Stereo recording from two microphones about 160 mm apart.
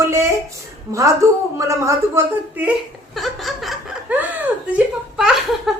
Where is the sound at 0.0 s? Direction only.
15° right (ahead or behind).